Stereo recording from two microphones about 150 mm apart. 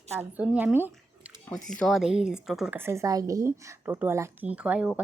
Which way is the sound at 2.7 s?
15° right (ahead or behind).